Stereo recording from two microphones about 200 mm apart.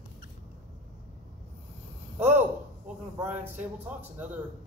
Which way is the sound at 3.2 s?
10° right (ahead or behind).